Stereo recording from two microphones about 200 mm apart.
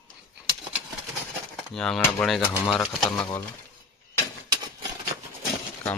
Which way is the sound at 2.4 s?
10° left (ahead or behind).